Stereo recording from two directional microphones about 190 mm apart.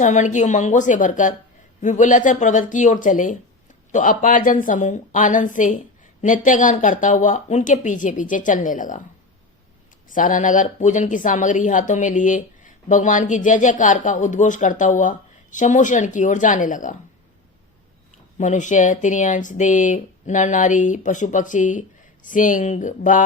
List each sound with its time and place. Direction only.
0.0 s a woman's voice: 40° left (ahead or behind)
10.1 s a woman's voice: 45° left (ahead or behind)
18.3 s a woman's voice: 40° left (ahead or behind)